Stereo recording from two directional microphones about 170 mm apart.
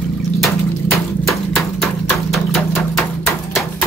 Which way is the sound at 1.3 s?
Centre (ahead or behind).